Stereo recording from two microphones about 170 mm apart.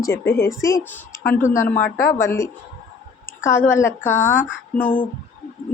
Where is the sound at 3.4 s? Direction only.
15° left (ahead or behind).